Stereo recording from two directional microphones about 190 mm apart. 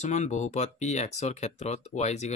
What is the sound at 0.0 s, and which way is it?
Speech, 40° left (ahead or behind).